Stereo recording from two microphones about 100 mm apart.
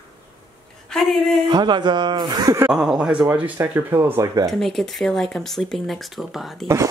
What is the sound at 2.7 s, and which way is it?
Speech, 5° right (ahead or behind).